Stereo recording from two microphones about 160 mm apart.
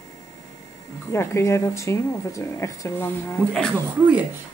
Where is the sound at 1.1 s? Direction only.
15° left (ahead or behind).